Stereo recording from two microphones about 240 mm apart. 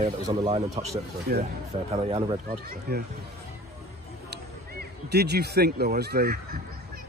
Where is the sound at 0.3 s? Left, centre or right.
Centre.